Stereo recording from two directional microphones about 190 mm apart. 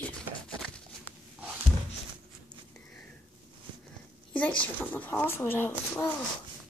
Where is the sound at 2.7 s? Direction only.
5° left (ahead or behind).